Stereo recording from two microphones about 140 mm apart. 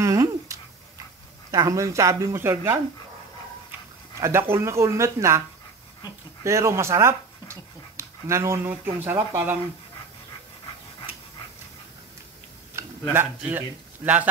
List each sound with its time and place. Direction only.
0.0 s a sound: 25° right (ahead or behind)
1.5 s speech: 25° right (ahead or behind)
4.2 s speech: 20° right (ahead or behind)
6.4 s speech: 20° right (ahead or behind)
13.1 s speech: 15° right (ahead or behind)